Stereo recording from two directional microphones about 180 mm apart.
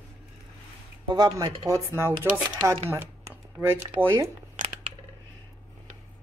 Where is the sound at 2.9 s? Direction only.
10° right (ahead or behind).